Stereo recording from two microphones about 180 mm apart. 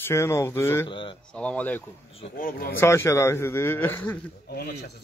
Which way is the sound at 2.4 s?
50° left (ahead or behind).